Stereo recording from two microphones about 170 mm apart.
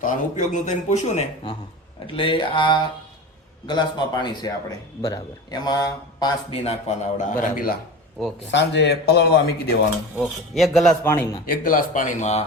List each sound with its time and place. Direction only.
0.0 s a man's voice: 45° left (ahead or behind)
2.1 s speech: 30° left (ahead or behind)
6.5 s a man's voice: 35° left (ahead or behind); by 7.8 s 55° left (ahead or behind)
8.4 s a man's voice: 90° left; by 9.7 s 70° left (ahead or behind)
10.2 s speech: centre (ahead or behind)
11.0 s speech: 15° left (ahead or behind)
11.4 s a man's voice: 55° left (ahead or behind)